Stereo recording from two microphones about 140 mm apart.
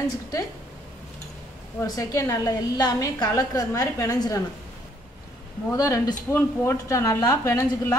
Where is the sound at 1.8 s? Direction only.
20° left (ahead or behind).